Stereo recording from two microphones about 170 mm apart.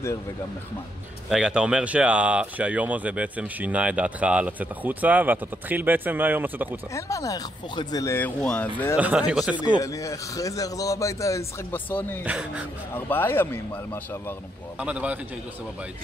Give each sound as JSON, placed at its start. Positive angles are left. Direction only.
{"t": 1.3, "sound": "speech", "side_deg": -5}
{"t": 6.9, "sound": "speech", "side_deg": 20}
{"t": 8.4, "sound": "speech", "side_deg": 5}
{"t": 8.9, "sound": "speech", "side_deg": -5}
{"t": 9.8, "sound": "a man's voice", "side_deg": 20}
{"t": 12.3, "sound": "speech", "side_deg": -10}
{"t": 12.9, "sound": "speech", "side_deg": 10}
{"t": 14.8, "sound": "speech", "side_deg": -10}